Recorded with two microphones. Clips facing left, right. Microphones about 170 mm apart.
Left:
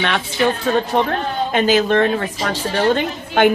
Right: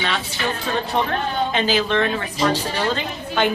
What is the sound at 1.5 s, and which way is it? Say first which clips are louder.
A woman's voice: left 8 dB; 50° left (ahead or behind).